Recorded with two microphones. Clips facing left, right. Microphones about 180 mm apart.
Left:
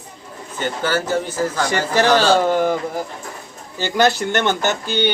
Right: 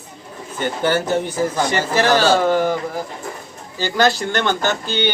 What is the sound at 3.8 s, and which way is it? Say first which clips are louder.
Speech: even; 20° left (ahead or behind).